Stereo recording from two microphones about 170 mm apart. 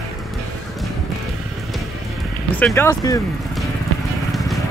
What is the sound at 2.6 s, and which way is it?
Speech, 15° left (ahead or behind).